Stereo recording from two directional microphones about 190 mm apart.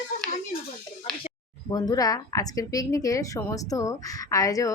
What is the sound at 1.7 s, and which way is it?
A woman's voice, 20° left (ahead or behind).